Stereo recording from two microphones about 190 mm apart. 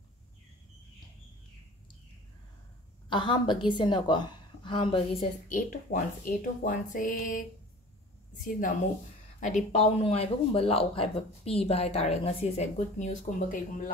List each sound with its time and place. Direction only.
3.1 s a woman's voice: 25° left (ahead or behind)
5.5 s speech: 45° left (ahead or behind)
8.5 s speech: 45° left (ahead or behind)